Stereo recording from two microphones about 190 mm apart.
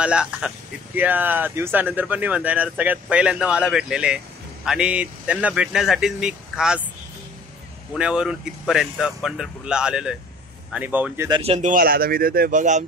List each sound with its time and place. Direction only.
0.0 s speech: 5° right (ahead or behind)
7.9 s speech: 5° right (ahead or behind)
11.2 s speech: 25° right (ahead or behind)
11.7 s speech: 50° right (ahead or behind)